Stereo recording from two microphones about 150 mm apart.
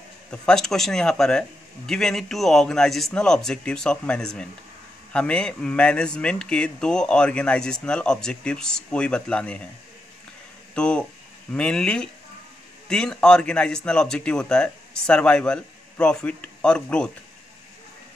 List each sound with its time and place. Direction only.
0.3 s speech: 5° left (ahead or behind)
10.7 s speech: 5° left (ahead or behind)